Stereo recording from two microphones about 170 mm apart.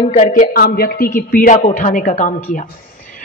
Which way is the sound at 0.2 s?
55° left (ahead or behind).